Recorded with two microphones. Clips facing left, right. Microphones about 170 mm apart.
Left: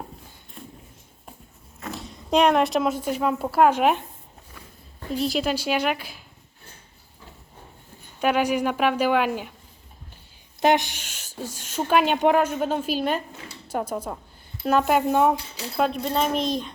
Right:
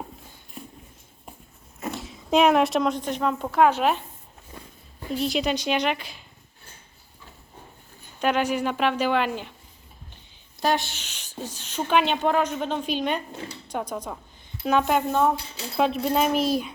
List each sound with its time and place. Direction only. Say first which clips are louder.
1.9 s speech: even; centre (ahead or behind)
4.5 s a sound: right 5 dB; 30° right (ahead or behind)
5.1 s speech: left 1 dB; centre (ahead or behind)
8.2 s a woman's voice: left 2 dB; 10° left (ahead or behind)
10.6 s a woman's voice: left 4 dB; 20° left (ahead or behind)
15.7 s speech: right 1 dB; centre (ahead or behind)